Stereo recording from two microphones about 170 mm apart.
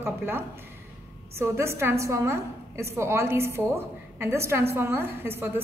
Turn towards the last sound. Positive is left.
turn(degrees=-15)  # may be behind; listen again after turning